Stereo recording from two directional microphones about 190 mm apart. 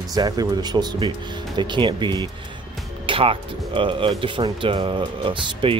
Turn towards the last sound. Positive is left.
turn(degrees=-25)  # may be behind; listen again after turning